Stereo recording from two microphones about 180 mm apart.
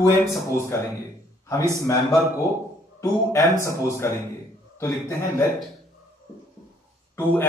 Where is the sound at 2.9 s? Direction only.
15° left (ahead or behind).